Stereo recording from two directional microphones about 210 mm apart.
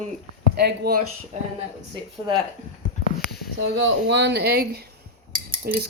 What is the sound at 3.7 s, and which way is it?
Speech, 60° right (ahead or behind).